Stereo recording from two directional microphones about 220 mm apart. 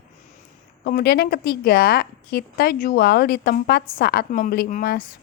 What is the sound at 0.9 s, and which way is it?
A woman's voice, 45° left (ahead or behind).